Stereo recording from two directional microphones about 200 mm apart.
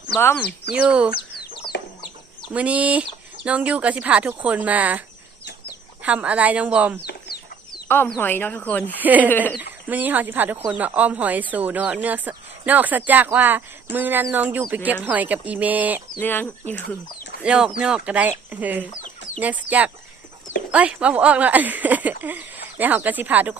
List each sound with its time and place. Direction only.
0.7 s speech: 5° right (ahead or behind)
1.7 s chicken: 60° left (ahead or behind)
2.5 s speech: 5° right (ahead or behind)
7.9 s speech: 10° left (ahead or behind)
9.0 s speech: 10° right (ahead or behind)
16.2 s speech: 10° left (ahead or behind)
17.4 s speech: 5° right (ahead or behind)